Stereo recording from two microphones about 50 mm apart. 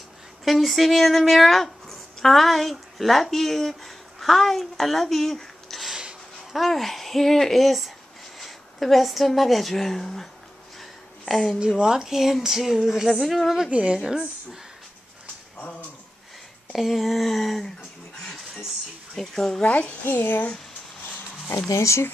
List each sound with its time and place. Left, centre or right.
0.5 s speech: centre
5.9 s a sound: centre
6.5 s a child's voice: centre
10.8 s a sound: centre
11.6 s speech: centre
13.7 s a woman's voice: right
13.9 s speech: centre
16.7 s a child's voice: centre
19.1 s speech: centre
19.6 s a woman's voice: left
20.1 s speech: left
21.0 s a sound: left
21.7 s speech: left